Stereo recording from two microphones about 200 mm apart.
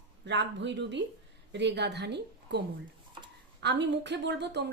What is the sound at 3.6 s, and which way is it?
Speech, 60° right (ahead or behind).